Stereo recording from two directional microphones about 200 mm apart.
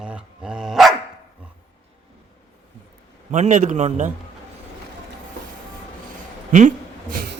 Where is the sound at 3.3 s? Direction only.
35° right (ahead or behind).